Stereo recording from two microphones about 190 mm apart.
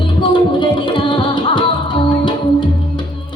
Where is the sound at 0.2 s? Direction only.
25° left (ahead or behind).